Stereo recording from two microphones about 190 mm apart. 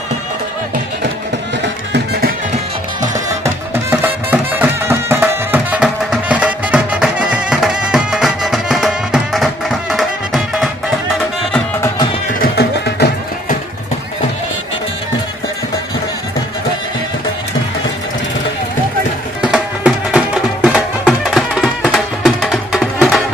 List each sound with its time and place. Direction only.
3.4 s music: 10° right (ahead or behind)
12.3 s music: 55° left (ahead or behind)
19.4 s music: 5° right (ahead or behind)